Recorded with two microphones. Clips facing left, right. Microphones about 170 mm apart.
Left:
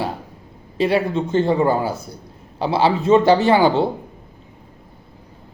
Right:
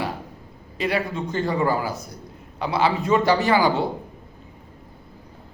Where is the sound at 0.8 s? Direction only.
30° left (ahead or behind).